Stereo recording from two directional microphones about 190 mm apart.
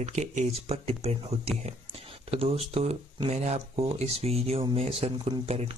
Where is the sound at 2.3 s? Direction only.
30° right (ahead or behind).